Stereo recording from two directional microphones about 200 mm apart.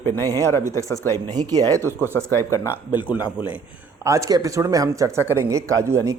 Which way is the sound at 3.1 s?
5° right (ahead or behind).